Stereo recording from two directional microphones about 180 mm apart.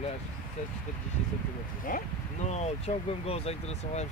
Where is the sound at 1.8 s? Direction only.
45° left (ahead or behind).